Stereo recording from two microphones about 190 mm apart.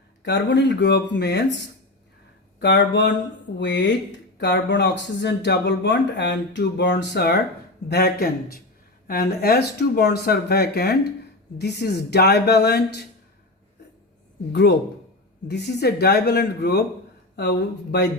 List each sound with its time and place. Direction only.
0.3 s speech: 65° left (ahead or behind)
2.6 s a sound: 70° left (ahead or behind)
4.4 s speech: 65° left (ahead or behind)
14.5 s speech: 65° left (ahead or behind)